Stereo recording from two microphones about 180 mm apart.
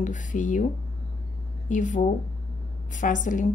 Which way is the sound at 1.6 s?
45° left (ahead or behind).